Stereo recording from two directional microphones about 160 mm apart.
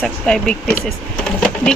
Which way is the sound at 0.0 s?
5° left (ahead or behind).